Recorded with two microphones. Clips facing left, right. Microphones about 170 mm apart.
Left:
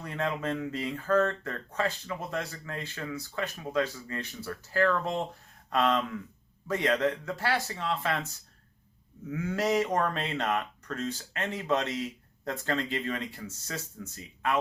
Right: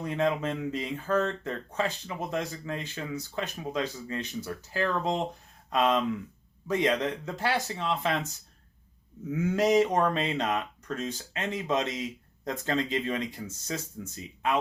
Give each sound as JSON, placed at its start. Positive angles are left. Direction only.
{"t": 0.0, "sound": "speech", "side_deg": -20}
{"t": 9.3, "sound": "speech", "side_deg": -20}